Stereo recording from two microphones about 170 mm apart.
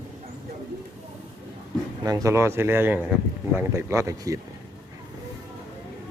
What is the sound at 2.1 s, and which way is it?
Speech, 20° right (ahead or behind).